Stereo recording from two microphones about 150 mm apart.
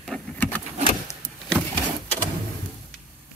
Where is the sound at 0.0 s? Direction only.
5° left (ahead or behind).